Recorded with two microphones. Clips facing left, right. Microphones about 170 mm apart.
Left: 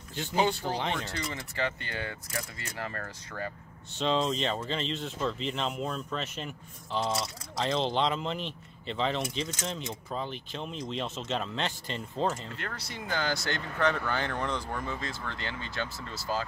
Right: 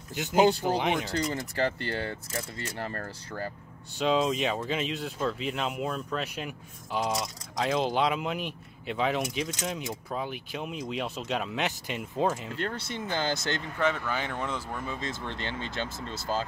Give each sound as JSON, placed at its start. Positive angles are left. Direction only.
{"t": 0.1, "sound": "speech", "side_deg": -10}
{"t": 1.1, "sound": "speech", "side_deg": -40}
{"t": 4.0, "sound": "speech", "side_deg": -10}
{"t": 12.6, "sound": "speech", "side_deg": -25}
{"t": 13.8, "sound": "speech", "side_deg": -5}
{"t": 15.0, "sound": "speech", "side_deg": -20}